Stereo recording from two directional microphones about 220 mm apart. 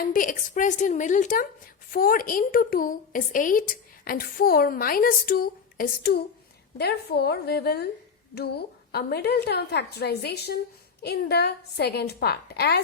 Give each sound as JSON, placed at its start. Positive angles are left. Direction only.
{"t": 0.0, "sound": "a woman's voice", "side_deg": 35}